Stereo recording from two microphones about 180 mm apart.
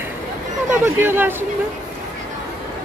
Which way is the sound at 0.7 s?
10° right (ahead or behind).